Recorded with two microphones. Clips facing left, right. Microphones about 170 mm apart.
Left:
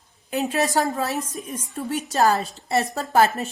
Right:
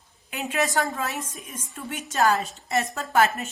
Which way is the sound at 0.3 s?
35° left (ahead or behind).